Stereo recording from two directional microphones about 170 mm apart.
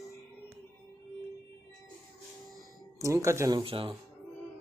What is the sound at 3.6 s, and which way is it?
Speech, 30° right (ahead or behind).